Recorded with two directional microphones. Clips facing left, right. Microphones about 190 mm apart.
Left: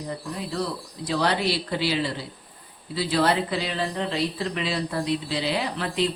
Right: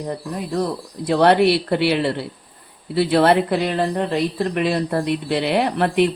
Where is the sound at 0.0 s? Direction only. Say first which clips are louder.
Right 5 dB; 55° right (ahead or behind).